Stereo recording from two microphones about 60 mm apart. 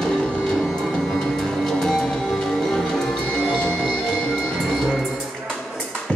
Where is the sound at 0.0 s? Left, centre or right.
Centre.